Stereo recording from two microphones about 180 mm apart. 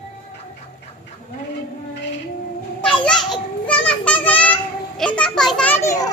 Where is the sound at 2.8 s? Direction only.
5° left (ahead or behind).